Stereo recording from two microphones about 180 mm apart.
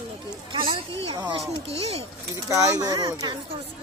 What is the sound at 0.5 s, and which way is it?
Speech, 30° right (ahead or behind).